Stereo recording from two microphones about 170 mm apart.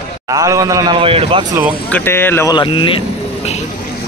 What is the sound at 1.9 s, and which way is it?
Speech, 10° left (ahead or behind).